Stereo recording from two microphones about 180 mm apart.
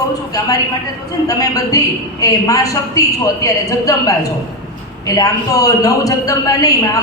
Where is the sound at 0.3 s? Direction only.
20° left (ahead or behind).